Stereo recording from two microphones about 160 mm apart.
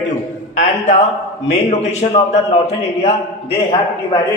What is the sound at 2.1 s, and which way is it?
Speech, 40° left (ahead or behind).